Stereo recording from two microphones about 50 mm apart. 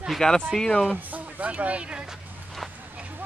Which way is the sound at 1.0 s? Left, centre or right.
Right.